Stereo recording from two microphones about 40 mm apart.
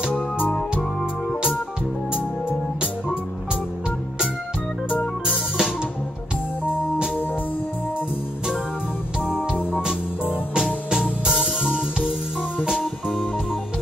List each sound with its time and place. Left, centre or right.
5.2 s music: centre
10.9 s music: centre
12.8 s music: centre